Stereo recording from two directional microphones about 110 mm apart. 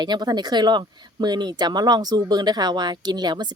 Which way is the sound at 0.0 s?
40° right (ahead or behind).